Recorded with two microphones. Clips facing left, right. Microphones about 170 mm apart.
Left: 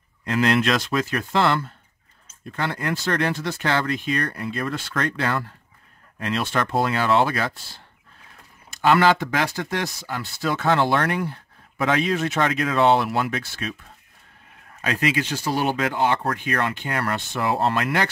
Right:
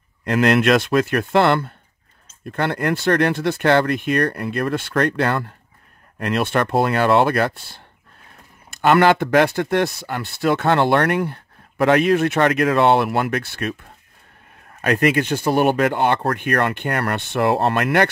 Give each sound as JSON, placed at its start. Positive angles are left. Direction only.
{"t": 0.2, "sound": "speech", "side_deg": -60}
{"t": 14.8, "sound": "speech", "side_deg": -60}